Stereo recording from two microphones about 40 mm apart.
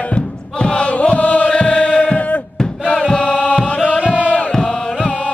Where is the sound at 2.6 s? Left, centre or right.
Centre.